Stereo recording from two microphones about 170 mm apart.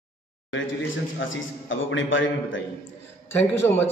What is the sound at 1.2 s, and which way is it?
A man's voice, 90° left.